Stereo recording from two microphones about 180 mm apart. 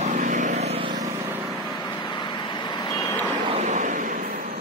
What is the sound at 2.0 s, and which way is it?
Vehicle, 25° left (ahead or behind).